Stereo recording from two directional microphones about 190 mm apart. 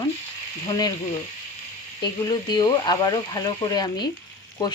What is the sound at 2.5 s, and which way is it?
Speech, 20° left (ahead or behind).